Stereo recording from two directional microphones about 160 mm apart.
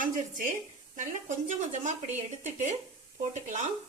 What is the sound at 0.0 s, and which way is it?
Speech, 55° right (ahead or behind).